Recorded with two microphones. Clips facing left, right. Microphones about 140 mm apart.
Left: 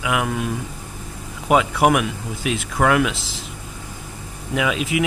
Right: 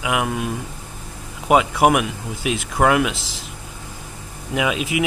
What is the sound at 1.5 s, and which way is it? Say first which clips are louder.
Speech: right 1 dB; 20° right (ahead or behind).